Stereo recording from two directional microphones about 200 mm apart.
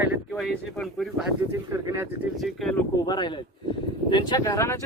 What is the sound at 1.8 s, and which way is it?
Speech, 15° right (ahead or behind).